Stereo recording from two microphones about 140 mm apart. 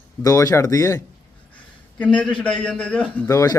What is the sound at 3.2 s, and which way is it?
Speech, 20° left (ahead or behind).